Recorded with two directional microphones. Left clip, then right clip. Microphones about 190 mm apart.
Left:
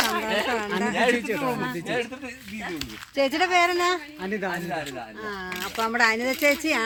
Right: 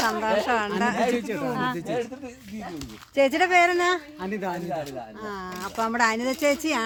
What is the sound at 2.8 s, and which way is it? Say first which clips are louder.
Speech: right 3 dB; 35° right (ahead or behind).